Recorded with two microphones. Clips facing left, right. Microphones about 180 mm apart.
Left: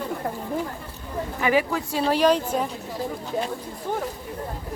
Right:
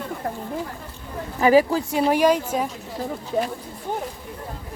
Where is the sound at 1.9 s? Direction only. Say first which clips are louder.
Left 1 dB; 15° right (ahead or behind).